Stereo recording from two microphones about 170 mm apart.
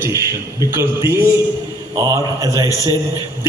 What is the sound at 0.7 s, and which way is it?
A man's voice, 15° right (ahead or behind).